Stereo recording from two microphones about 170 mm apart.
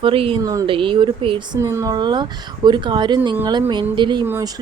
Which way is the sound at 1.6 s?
15° right (ahead or behind).